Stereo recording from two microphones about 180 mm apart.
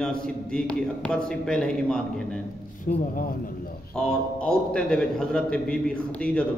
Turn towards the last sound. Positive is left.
turn(degrees=5)  # may be behind; listen again after turning